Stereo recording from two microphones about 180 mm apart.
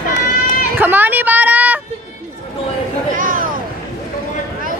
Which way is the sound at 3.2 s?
50° right (ahead or behind).